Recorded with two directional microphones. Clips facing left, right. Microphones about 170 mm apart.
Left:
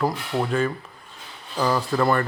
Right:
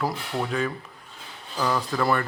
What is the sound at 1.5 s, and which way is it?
Speech, 30° left (ahead or behind).